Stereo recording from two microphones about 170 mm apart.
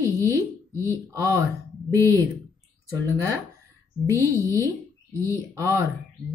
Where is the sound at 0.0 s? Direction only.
20° right (ahead or behind).